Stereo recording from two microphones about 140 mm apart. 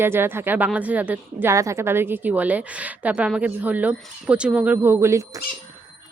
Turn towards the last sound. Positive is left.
turn(degrees=-20)  # may be behind; listen again after turning